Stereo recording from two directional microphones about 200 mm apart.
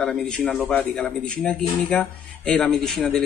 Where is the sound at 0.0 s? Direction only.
5° left (ahead or behind).